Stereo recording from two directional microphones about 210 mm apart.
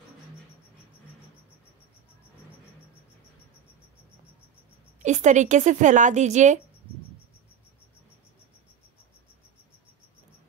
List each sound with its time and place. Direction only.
5.0 s speech: 35° right (ahead or behind)